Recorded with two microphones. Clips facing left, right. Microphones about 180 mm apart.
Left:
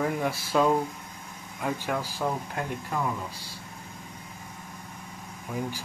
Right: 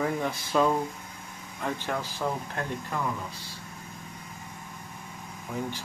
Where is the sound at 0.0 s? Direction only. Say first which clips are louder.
Left 1 dB; 5° left (ahead or behind).